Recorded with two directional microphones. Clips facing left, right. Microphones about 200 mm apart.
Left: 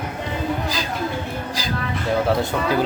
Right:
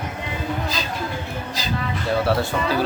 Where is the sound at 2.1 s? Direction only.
20° left (ahead or behind).